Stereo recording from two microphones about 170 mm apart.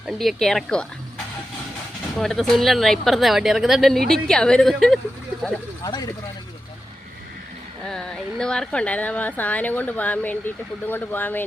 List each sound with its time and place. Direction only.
0.0 s speech: centre (ahead or behind)
2.1 s speech: centre (ahead or behind)
5.8 s speech: 20° left (ahead or behind)
7.9 s speech: 5° left (ahead or behind)